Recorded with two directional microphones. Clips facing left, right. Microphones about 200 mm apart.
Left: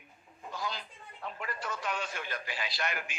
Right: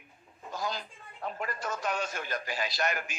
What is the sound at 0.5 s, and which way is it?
A man's voice, 45° right (ahead or behind).